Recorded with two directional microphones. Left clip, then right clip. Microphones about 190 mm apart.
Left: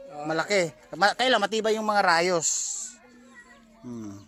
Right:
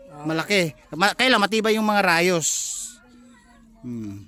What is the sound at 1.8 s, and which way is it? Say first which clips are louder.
Speech: right 1 dB; 70° right (ahead or behind).